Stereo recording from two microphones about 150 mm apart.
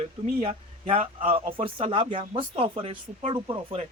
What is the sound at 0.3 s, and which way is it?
Speech, 40° right (ahead or behind).